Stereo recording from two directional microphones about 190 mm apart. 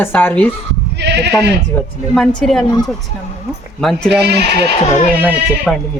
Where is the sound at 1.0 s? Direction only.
65° right (ahead or behind).